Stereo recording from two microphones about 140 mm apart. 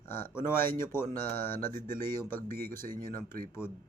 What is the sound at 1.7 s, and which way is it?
Speech, 75° right (ahead or behind).